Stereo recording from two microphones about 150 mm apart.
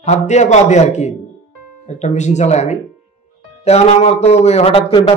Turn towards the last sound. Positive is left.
turn(degrees=40)  # may be behind; listen again after turning